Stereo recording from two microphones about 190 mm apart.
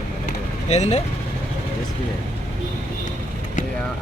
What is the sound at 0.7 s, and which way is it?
Speech, 35° left (ahead or behind).